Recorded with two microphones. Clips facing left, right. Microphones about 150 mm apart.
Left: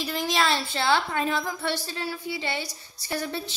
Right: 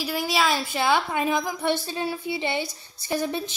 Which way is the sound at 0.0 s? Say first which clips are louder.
Right 1 dB; 10° right (ahead or behind).